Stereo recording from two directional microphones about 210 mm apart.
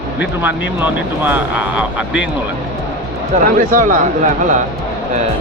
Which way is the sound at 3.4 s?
40° right (ahead or behind).